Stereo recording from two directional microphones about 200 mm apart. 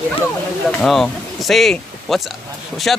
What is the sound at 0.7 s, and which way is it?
Speech, 5° left (ahead or behind).